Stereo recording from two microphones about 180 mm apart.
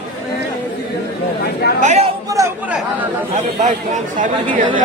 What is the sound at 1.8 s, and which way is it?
Speech, 40° right (ahead or behind).